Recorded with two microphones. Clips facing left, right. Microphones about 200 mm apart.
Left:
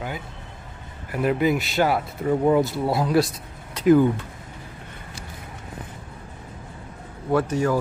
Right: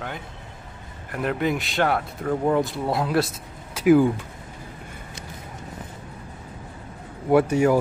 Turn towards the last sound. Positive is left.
turn(degrees=-10)  # may be behind; listen again after turning